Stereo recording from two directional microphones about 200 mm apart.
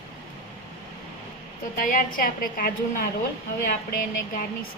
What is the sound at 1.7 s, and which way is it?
A woman's voice, 45° left (ahead or behind).